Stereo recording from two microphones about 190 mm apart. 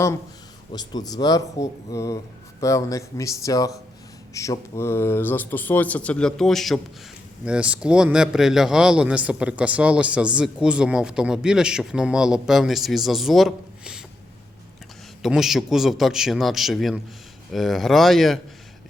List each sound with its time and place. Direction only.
0.7 s speech: 20° left (ahead or behind); by 14.0 s centre (ahead or behind)
15.2 s speech: centre (ahead or behind)